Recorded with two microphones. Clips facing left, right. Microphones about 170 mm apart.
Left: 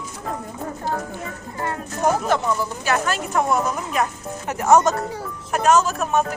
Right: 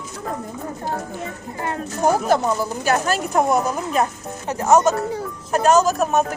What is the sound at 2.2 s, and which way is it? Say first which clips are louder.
A woman's voice: right 2 dB; 40° right (ahead or behind).